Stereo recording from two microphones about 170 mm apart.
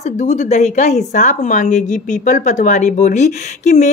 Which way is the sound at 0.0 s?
45° left (ahead or behind).